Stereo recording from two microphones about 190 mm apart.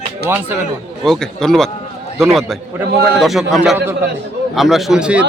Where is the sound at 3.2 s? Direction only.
Centre (ahead or behind).